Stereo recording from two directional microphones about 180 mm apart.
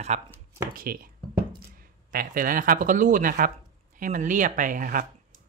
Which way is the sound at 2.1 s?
50° right (ahead or behind).